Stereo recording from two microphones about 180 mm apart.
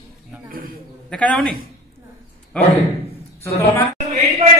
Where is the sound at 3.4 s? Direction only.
15° left (ahead or behind).